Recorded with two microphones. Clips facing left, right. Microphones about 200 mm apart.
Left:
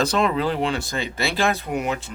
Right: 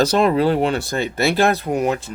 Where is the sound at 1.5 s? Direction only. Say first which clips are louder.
Right 5 dB; 40° right (ahead or behind).